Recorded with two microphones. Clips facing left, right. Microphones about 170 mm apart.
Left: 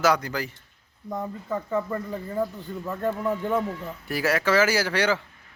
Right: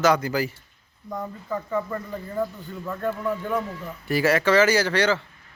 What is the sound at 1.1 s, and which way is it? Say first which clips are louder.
Speech: even; 25° left (ahead or behind).